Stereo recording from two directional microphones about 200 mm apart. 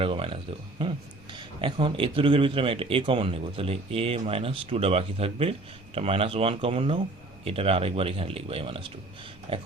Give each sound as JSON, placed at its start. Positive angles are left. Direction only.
{"t": 0.0, "sound": "speech", "side_deg": -25}